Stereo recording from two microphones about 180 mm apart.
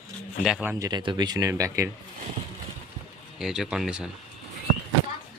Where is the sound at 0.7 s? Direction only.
20° right (ahead or behind).